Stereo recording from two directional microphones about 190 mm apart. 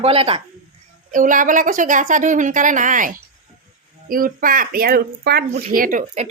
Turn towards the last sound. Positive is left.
turn(degrees=-40)  # may be behind; listen again after turning